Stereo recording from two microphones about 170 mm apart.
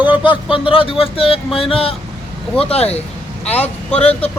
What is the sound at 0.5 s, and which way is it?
Speech, 30° left (ahead or behind).